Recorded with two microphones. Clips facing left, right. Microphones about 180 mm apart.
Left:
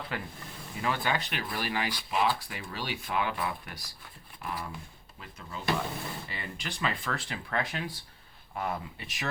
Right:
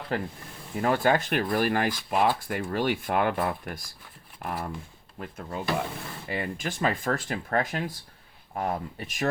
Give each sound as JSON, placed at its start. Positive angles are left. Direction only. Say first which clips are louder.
{"t": 0.1, "sound": "speech", "louder": "right 7 dB", "side_deg": -40}